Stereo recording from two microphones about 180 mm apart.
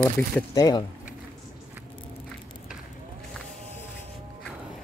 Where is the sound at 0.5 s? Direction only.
20° left (ahead or behind).